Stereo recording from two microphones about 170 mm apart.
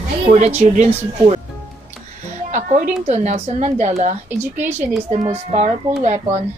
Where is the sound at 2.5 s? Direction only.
45° right (ahead or behind).